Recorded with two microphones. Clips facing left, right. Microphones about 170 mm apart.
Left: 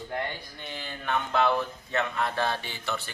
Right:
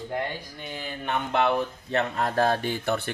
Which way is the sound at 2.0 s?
40° right (ahead or behind).